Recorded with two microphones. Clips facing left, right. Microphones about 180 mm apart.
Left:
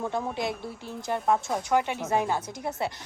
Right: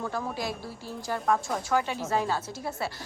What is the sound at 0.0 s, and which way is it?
Speech, 20° left (ahead or behind).